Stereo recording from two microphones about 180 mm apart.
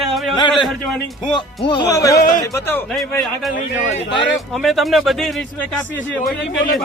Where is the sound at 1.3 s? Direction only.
25° left (ahead or behind).